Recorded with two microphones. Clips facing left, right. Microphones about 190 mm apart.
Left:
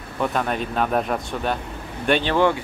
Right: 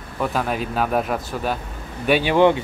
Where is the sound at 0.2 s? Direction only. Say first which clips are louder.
Even; 5° right (ahead or behind).